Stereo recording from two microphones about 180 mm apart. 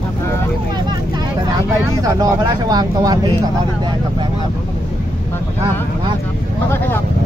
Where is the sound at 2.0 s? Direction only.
20° right (ahead or behind).